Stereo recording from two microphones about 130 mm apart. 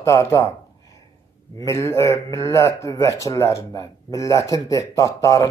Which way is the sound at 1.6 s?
25° left (ahead or behind).